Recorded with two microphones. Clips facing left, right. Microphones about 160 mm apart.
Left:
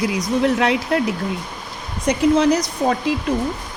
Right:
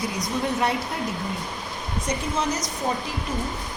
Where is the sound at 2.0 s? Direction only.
70° left (ahead or behind).